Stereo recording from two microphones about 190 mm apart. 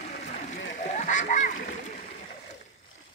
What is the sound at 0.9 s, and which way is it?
Splash, 40° left (ahead or behind).